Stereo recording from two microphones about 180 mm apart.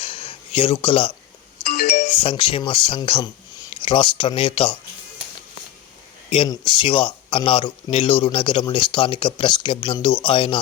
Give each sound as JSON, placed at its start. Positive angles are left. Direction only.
{"t": 0.0, "sound": "a sound", "side_deg": 30}
{"t": 1.6, "sound": "music", "side_deg": 60}
{"t": 2.0, "sound": "speech", "side_deg": 30}
{"t": 6.3, "sound": "speech", "side_deg": 30}